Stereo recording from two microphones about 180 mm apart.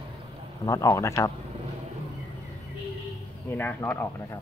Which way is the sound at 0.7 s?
15° left (ahead or behind).